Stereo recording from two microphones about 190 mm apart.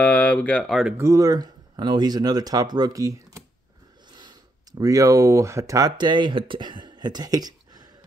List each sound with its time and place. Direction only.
0.0 s speech: 10° left (ahead or behind)
0.9 s speech: 15° right (ahead or behind)